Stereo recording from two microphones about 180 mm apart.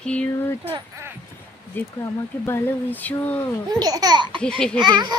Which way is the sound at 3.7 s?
20° right (ahead or behind).